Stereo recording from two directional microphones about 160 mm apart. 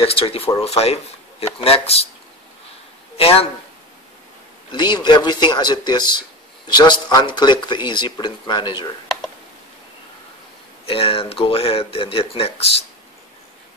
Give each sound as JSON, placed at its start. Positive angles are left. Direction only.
{"t": 0.0, "sound": "speech", "side_deg": 35}
{"t": 3.2, "sound": "speech", "side_deg": 35}
{"t": 4.7, "sound": "speech", "side_deg": 30}
{"t": 10.9, "sound": "speech", "side_deg": 35}